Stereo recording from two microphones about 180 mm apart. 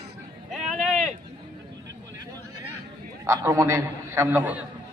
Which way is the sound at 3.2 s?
15° right (ahead or behind).